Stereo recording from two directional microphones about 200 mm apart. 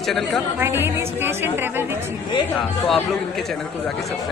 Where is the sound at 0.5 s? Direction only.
10° right (ahead or behind).